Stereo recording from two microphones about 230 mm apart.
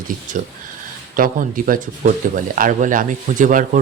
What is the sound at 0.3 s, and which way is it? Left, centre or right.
Speech, right.